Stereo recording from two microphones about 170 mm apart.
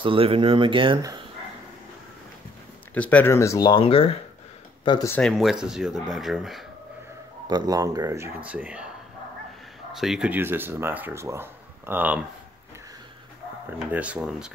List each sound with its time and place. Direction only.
0.0 s speech: 30° right (ahead or behind)
2.9 s speech: 10° left (ahead or behind)
3.8 s speech: 35° left (ahead or behind)
4.8 s speech: 25° left (ahead or behind)
5.1 s speech: centre (ahead or behind)
7.4 s speech: 25° right (ahead or behind)
8.5 s speech: 10° right (ahead or behind)
9.9 s speech: centre (ahead or behind)
13.9 s speech: 10° right (ahead or behind)